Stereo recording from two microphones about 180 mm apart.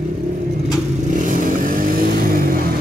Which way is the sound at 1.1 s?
45° right (ahead or behind).